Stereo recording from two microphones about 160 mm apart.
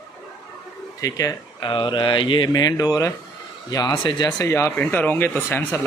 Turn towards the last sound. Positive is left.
turn(degrees=15)  # may be behind; listen again after turning